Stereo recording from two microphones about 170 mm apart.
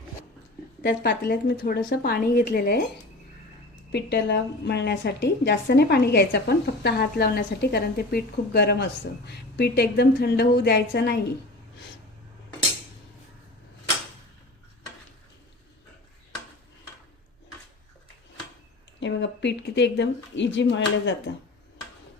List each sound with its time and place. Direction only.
0.8 s a woman's voice: 80° left
2.0 s a woman's voice: 60° left (ahead or behind)
3.9 s a woman's voice: 85° left
18.9 s speech: 90° left